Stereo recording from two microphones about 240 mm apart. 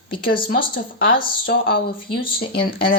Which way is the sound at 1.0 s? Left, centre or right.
Left.